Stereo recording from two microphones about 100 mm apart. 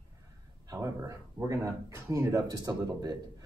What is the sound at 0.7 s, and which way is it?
Speech, 35° right (ahead or behind).